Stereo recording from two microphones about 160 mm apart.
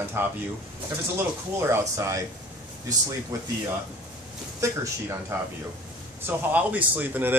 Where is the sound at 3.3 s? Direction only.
20° right (ahead or behind).